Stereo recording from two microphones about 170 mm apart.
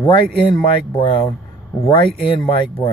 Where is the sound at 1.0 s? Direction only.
30° left (ahead or behind).